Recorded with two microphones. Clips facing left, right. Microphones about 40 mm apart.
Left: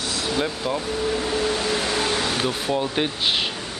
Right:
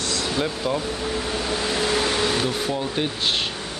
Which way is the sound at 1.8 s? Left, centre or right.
Centre.